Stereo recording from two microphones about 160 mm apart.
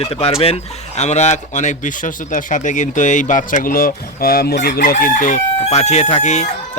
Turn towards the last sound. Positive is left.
turn(degrees=45)  # may be behind; listen again after turning